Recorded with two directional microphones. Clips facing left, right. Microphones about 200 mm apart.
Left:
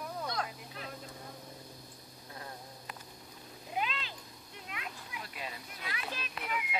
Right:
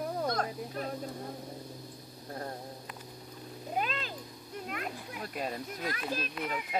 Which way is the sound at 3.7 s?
45° right (ahead or behind).